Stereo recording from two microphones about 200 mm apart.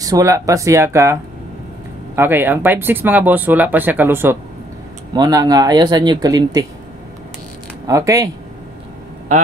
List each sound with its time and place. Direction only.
0.0 s speech: 15° right (ahead or behind)
2.1 s speech: 10° right (ahead or behind)
7.8 s speech: 15° right (ahead or behind)